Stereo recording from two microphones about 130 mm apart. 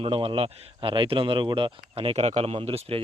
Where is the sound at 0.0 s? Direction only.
45° right (ahead or behind).